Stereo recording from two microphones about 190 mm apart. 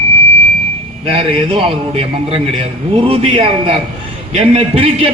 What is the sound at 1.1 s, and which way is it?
A man's voice, 30° right (ahead or behind).